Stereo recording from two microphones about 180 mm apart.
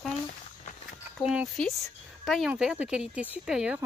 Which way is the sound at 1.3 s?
Centre (ahead or behind).